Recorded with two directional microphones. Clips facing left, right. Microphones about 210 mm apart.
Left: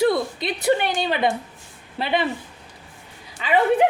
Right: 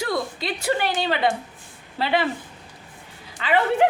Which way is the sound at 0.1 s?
20° left (ahead or behind).